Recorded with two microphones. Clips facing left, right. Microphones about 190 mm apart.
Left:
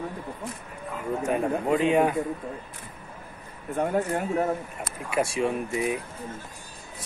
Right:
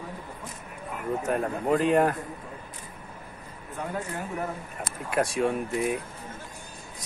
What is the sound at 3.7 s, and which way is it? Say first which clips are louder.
Speech: left 8 dB; 50° left (ahead or behind).